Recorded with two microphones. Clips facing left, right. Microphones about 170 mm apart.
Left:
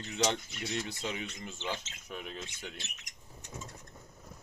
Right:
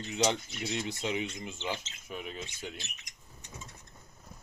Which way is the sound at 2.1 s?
5° right (ahead or behind).